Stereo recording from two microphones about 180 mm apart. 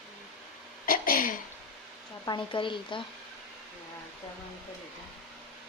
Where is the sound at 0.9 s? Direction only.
50° left (ahead or behind).